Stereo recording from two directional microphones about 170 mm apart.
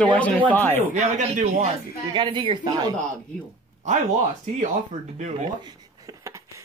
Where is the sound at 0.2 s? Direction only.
10° left (ahead or behind).